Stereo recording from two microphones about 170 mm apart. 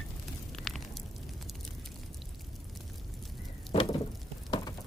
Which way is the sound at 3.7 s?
35° left (ahead or behind).